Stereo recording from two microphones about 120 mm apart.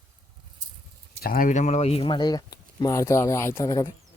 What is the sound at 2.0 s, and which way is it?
Speech, 35° left (ahead or behind).